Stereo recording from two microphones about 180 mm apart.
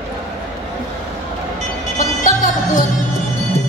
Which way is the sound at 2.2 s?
45° left (ahead or behind).